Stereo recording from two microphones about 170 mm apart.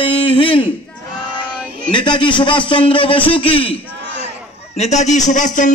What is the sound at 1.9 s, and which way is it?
A man's voice, 30° left (ahead or behind).